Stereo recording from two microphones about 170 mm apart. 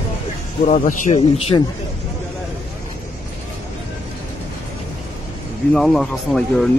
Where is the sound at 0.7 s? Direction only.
50° left (ahead or behind).